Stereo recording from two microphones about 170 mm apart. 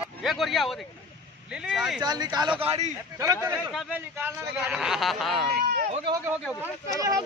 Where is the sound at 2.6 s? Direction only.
40° right (ahead or behind).